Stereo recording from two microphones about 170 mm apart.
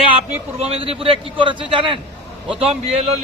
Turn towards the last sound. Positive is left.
turn(degrees=-40)  # may be behind; listen again after turning